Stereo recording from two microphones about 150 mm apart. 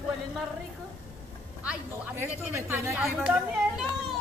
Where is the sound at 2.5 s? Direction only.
15° right (ahead or behind).